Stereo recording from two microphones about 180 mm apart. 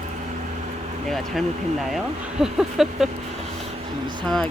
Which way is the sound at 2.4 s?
Centre (ahead or behind).